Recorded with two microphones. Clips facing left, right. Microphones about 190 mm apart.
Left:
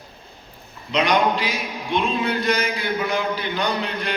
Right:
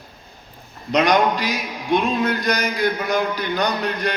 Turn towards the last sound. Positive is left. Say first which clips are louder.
# right 2 dB
turn(degrees=-45)  # may be behind; listen again after turning